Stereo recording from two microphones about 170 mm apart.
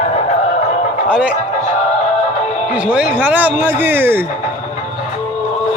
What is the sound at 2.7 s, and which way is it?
Speech, 5° right (ahead or behind).